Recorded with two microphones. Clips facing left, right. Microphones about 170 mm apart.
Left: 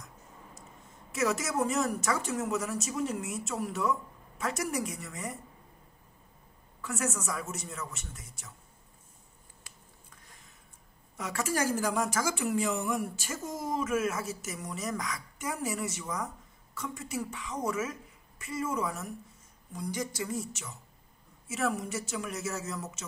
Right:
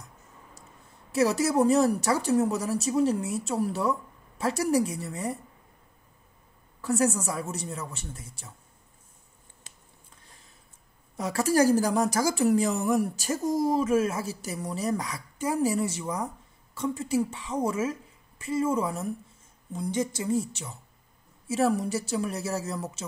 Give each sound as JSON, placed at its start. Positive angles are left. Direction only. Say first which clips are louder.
{"t": 1.1, "sound": "a woman's voice", "louder": "right 7 dB", "side_deg": -35}
{"t": 6.8, "sound": "a woman's voice", "louder": "right 9 dB", "side_deg": -35}
{"t": 9.6, "sound": "a sound", "louder": "even", "side_deg": -25}
{"t": 11.1, "sound": "a woman's voice", "louder": "right 8 dB", "side_deg": -35}